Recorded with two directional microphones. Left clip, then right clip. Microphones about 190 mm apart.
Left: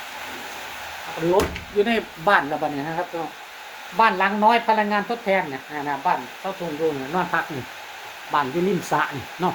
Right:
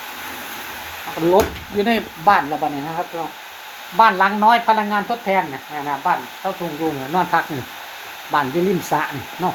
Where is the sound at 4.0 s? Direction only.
10° right (ahead or behind).